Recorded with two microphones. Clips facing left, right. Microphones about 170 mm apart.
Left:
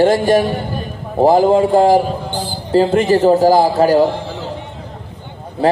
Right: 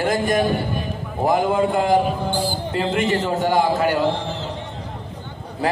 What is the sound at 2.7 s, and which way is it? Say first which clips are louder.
A man's voice: left 10 dB; 35° left (ahead or behind).